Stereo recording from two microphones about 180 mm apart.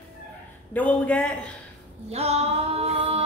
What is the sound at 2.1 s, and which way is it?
Female singing, 35° right (ahead or behind).